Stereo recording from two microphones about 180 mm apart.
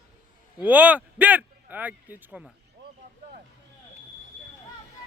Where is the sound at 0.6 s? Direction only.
10° right (ahead or behind).